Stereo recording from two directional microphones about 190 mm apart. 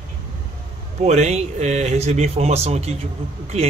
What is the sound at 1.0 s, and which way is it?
A man's voice, 35° right (ahead or behind).